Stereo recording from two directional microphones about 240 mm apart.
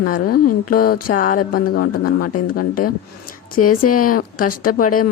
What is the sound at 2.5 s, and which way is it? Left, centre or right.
Speech, left.